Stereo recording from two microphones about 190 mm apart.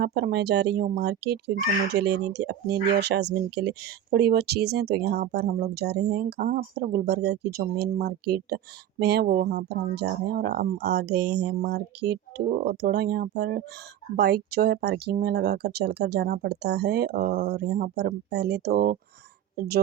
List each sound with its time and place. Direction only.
0.0 s speech: 60° right (ahead or behind)